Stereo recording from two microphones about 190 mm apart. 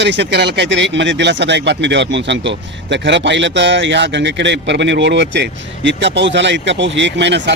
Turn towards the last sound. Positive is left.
turn(degrees=-65)  # may be behind; listen again after turning